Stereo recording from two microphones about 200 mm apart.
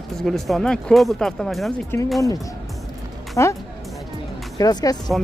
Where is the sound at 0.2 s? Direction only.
Centre (ahead or behind).